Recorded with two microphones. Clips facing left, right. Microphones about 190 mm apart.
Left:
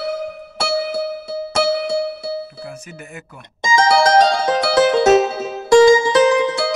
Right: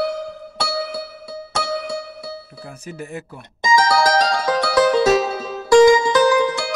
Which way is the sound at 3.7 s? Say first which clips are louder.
Left 3 dB; 25° left (ahead or behind).